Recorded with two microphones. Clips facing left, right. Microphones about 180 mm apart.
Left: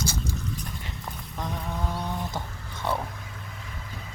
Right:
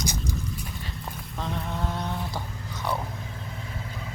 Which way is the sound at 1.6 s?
Centre (ahead or behind).